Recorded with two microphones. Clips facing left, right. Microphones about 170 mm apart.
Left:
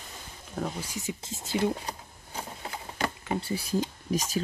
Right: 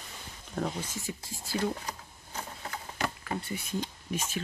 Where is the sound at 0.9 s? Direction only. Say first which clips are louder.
Left 3 dB; 20° left (ahead or behind).